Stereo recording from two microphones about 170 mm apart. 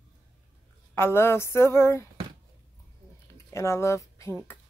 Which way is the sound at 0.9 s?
15° left (ahead or behind).